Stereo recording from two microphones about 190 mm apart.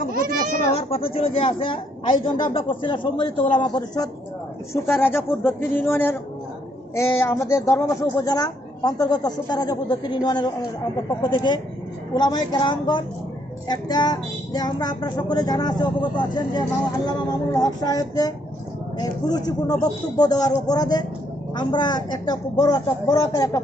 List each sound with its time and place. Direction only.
0.1 s children playing: 50° right (ahead or behind)
0.7 s a woman's voice: 30° left (ahead or behind)